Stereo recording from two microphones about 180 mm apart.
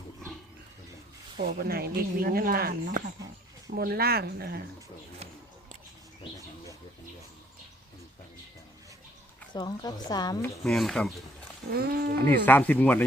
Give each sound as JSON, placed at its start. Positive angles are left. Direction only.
{"t": 1.4, "sound": "speech", "side_deg": -60}
{"t": 9.5, "sound": "speech", "side_deg": 25}
{"t": 10.4, "sound": "speech", "side_deg": 0}
{"t": 11.7, "sound": "speech", "side_deg": -60}
{"t": 12.1, "sound": "speech", "side_deg": 10}